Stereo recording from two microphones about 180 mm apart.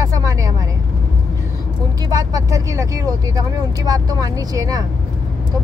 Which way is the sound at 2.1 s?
20° right (ahead or behind).